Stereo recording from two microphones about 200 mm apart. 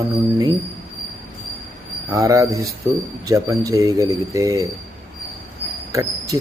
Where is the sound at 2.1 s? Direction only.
15° right (ahead or behind).